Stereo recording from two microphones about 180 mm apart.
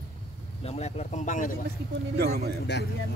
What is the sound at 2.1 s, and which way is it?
Speech, 60° right (ahead or behind).